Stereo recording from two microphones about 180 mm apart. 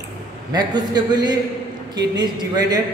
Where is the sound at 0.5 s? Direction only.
25° right (ahead or behind).